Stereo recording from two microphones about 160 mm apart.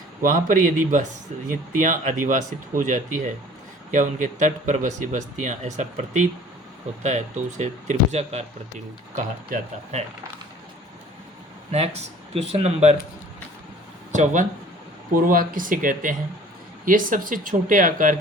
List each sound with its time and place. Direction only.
0.2 s speech: 55° right (ahead or behind)
11.7 s speech: 40° right (ahead or behind)
14.1 s speech: 50° right (ahead or behind)
15.1 s speech: 60° right (ahead or behind)